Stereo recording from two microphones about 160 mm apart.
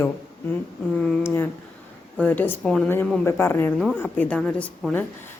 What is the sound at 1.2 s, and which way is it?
Speech, 15° left (ahead or behind).